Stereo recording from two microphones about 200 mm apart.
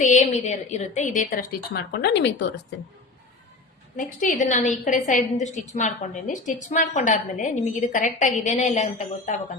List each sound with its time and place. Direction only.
0.0 s a woman's voice: 35° left (ahead or behind); by 2.5 s 60° left (ahead or behind)
3.9 s a woman's voice: 40° left (ahead or behind)